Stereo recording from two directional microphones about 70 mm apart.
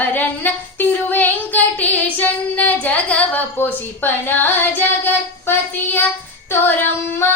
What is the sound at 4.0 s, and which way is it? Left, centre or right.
Child singing, left.